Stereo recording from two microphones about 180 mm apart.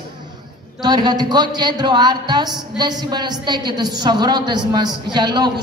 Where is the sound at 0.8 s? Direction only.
25° right (ahead or behind).